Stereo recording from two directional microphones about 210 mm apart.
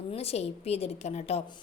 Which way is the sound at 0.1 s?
30° left (ahead or behind).